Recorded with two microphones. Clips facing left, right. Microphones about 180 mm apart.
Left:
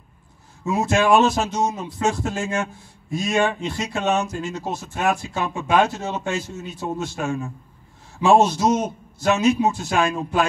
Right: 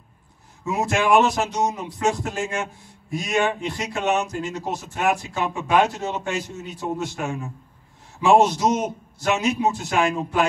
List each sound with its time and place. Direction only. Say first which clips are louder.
0.9 s a man's voice: left 1 dB; 20° right (ahead or behind)